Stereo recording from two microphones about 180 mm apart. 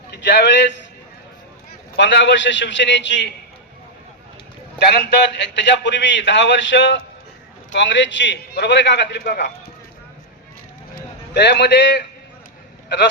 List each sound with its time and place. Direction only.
0.1 s a man's voice: 75° left (ahead or behind)
2.0 s a man's voice: 85° left
4.8 s a man's voice: 65° left (ahead or behind); by 7.0 s 90° left
7.7 s a man's voice: 80° left; by 9.5 s 60° left (ahead or behind)
10.9 s a man's voice: 70° left (ahead or behind)